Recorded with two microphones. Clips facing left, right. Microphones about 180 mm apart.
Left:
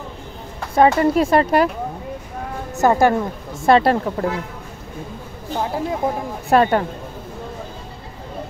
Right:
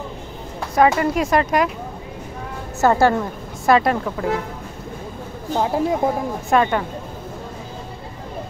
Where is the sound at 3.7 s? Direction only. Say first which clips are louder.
Left 2 dB; 30° left (ahead or behind).